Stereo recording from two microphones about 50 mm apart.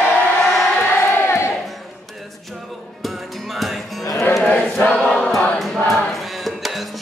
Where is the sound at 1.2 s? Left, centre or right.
Left.